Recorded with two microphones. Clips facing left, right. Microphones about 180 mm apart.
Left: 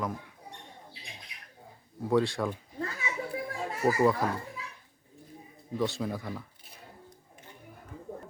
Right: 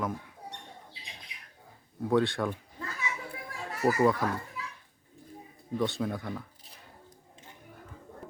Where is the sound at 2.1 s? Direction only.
Centre (ahead or behind).